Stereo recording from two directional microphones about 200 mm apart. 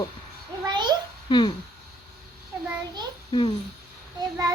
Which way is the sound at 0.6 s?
20° right (ahead or behind).